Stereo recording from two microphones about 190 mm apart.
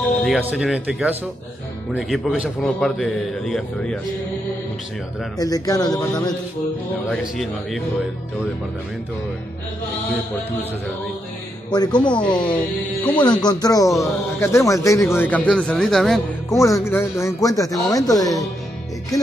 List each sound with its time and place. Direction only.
0.2 s a man's voice: 5° right (ahead or behind)
5.4 s speech: 20° left (ahead or behind)
7.1 s a man's voice: centre (ahead or behind)
11.7 s a man's voice: 20° left (ahead or behind); by 16.5 s centre (ahead or behind)
16.5 s a man's voice: 15° left (ahead or behind)